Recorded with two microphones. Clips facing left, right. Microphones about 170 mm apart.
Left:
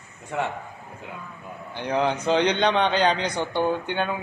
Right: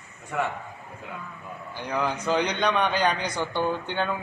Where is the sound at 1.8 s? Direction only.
25° left (ahead or behind).